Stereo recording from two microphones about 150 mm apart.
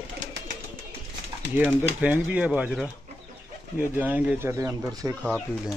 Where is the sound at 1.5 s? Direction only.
10° right (ahead or behind).